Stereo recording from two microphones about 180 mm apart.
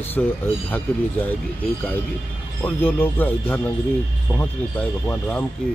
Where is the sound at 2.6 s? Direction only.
10° left (ahead or behind).